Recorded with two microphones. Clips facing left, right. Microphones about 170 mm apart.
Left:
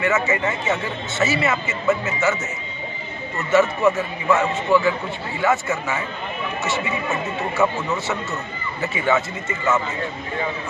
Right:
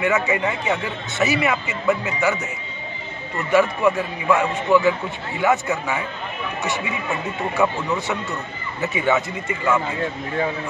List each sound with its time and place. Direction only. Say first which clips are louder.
0.0 s a man's voice: even; 15° right (ahead or behind)
3.3 s a man's voice: even; 15° right (ahead or behind)
7.6 s a man's voice: even; 15° right (ahead or behind)
8.8 s a man's voice: right 1 dB; 15° right (ahead or behind)